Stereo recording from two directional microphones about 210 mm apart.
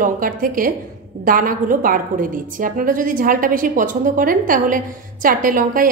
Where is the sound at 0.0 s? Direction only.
40° right (ahead or behind).